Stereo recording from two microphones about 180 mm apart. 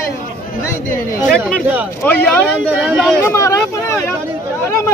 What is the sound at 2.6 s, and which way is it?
Speech, 10° right (ahead or behind).